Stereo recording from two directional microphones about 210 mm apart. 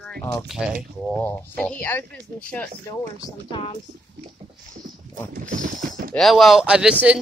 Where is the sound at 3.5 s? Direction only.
25° left (ahead or behind).